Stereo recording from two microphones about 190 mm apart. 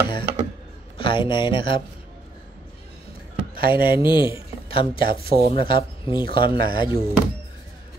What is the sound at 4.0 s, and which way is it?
Speech, 25° left (ahead or behind).